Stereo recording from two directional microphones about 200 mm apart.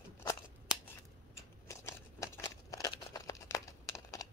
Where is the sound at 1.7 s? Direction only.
15° left (ahead or behind).